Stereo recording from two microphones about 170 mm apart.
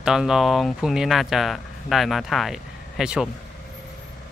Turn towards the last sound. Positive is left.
turn(degrees=-5)  # may be behind; listen again after turning